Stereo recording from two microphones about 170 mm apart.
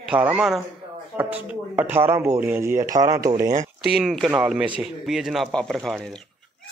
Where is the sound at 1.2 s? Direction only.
10° right (ahead or behind).